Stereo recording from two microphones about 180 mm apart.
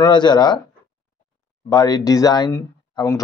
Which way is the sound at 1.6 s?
20° left (ahead or behind).